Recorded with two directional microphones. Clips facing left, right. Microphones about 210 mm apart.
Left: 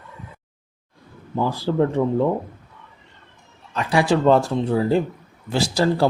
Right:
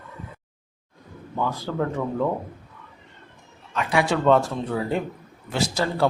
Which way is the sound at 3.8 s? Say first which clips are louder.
Left 4 dB; 35° left (ahead or behind).